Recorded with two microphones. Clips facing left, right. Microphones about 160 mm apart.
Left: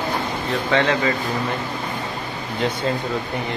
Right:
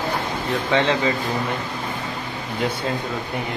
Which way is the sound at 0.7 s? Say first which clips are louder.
Even; 20° right (ahead or behind).